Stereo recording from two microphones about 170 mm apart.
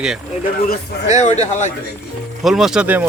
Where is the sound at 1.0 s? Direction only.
45° left (ahead or behind).